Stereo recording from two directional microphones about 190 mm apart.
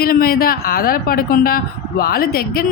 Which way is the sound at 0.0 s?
50° left (ahead or behind).